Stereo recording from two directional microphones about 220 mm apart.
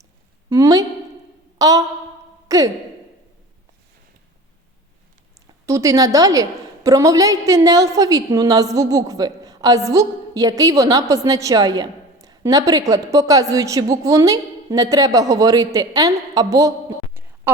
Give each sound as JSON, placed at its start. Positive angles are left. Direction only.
{"t": 0.5, "sound": "a woman's voice", "side_deg": -15}
{"t": 1.5, "sound": "a sound", "side_deg": -15}
{"t": 2.5, "sound": "speech", "side_deg": -15}
{"t": 5.6, "sound": "a woman's voice", "side_deg": -15}